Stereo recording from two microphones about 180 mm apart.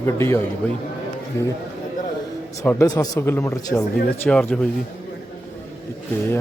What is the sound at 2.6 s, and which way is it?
A man's voice, 20° left (ahead or behind).